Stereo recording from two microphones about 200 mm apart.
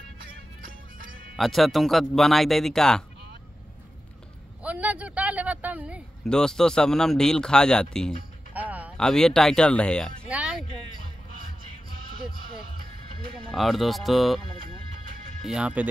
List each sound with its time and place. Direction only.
1.3 s speech: centre (ahead or behind)
4.6 s a man's voice: 5° right (ahead or behind)
6.2 s speech: 5° left (ahead or behind)
8.5 s a sound: 10° right (ahead or behind)
8.9 s speech: 5° left (ahead or behind)
13.5 s speech: centre (ahead or behind)
15.4 s speech: 5° right (ahead or behind)